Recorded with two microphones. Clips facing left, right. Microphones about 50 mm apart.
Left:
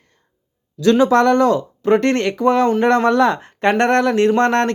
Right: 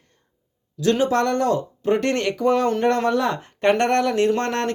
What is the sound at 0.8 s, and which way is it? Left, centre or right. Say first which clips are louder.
Speech: left 6 dB; left.